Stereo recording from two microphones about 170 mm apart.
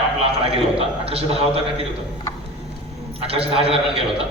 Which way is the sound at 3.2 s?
35° right (ahead or behind).